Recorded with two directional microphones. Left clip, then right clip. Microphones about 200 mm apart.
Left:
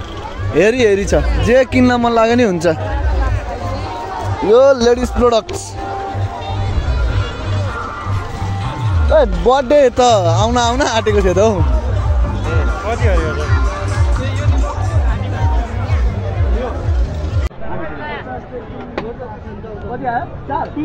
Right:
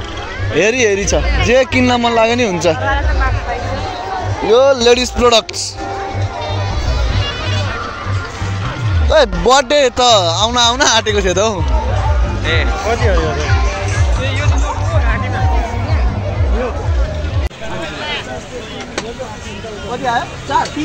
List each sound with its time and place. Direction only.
0.6 s speech: 30° left (ahead or behind)
4.5 s speech: 30° left (ahead or behind)
4.8 s speech: 10° left (ahead or behind)
9.1 s speech: 5° right (ahead or behind)
9.8 s speech: 20° left (ahead or behind)
12.8 s speech: 40° right (ahead or behind)